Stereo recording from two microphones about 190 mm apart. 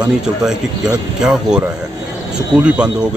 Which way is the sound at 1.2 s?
5° right (ahead or behind).